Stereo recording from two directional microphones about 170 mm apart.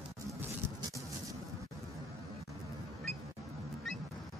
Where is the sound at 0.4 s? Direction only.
15° right (ahead or behind).